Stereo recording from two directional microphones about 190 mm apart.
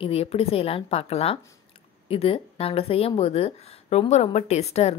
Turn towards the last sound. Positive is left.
turn(degrees=35)  # may be behind; listen again after turning